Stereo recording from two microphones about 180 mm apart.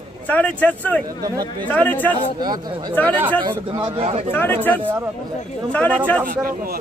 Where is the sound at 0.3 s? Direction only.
10° left (ahead or behind).